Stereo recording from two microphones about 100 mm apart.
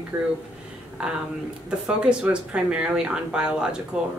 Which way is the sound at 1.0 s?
10° right (ahead or behind).